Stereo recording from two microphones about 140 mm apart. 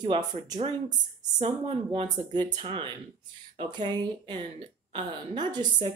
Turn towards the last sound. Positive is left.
turn(degrees=-35)  # may be behind; listen again after turning